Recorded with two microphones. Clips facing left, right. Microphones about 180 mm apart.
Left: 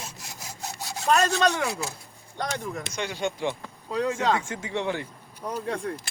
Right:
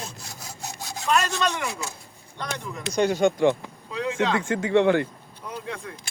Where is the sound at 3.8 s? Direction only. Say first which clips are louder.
Left 1 dB; 40° left (ahead or behind).